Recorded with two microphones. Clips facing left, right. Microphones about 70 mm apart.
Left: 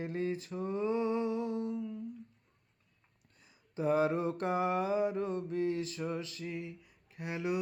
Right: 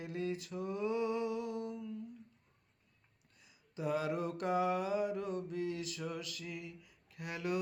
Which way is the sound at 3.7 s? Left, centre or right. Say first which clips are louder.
Left 6 dB; left.